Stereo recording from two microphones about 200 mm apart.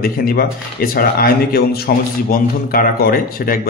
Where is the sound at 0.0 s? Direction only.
50° left (ahead or behind).